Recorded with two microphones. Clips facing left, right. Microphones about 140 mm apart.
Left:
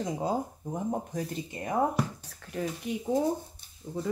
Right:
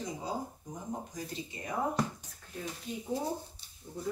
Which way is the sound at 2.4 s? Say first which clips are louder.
Left 7 dB; 80° left.